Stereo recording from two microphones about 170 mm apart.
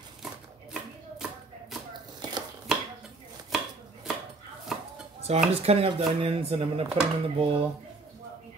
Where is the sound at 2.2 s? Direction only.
25° right (ahead or behind).